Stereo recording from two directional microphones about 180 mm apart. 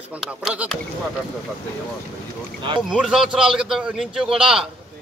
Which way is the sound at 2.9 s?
5° right (ahead or behind).